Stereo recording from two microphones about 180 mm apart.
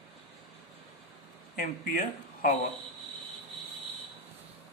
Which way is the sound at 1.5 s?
50° left (ahead or behind).